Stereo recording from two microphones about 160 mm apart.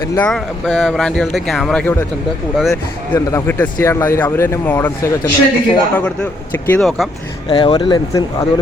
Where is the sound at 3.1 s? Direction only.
15° left (ahead or behind).